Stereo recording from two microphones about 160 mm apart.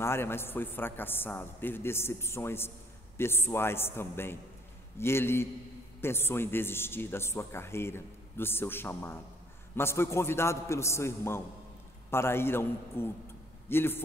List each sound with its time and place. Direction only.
0.0 s a man's voice: 15° left (ahead or behind)